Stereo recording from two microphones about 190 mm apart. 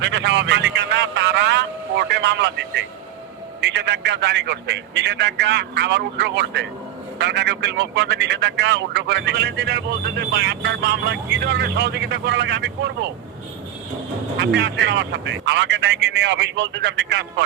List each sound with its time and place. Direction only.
0.0 s a man's voice: 70° right (ahead or behind)
14.3 s a man's voice: 65° right (ahead or behind)